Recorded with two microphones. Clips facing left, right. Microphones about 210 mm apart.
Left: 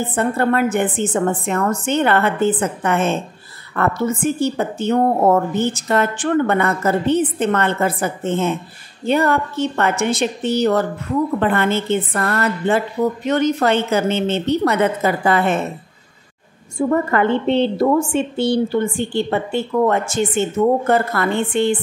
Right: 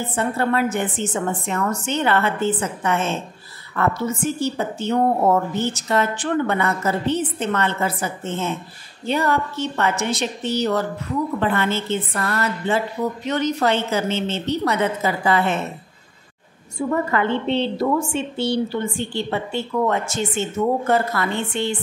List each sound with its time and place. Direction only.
0.0 s a woman's voice: 55° left (ahead or behind)
16.7 s a woman's voice: 50° left (ahead or behind)